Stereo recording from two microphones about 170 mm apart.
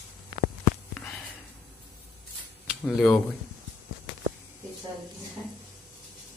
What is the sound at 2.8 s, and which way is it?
Speech, 5° left (ahead or behind).